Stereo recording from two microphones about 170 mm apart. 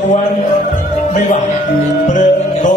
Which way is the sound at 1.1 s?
45° left (ahead or behind).